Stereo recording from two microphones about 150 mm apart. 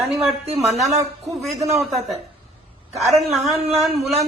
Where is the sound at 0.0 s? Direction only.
Centre (ahead or behind).